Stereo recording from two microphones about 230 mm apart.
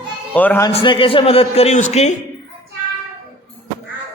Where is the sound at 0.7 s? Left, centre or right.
Left.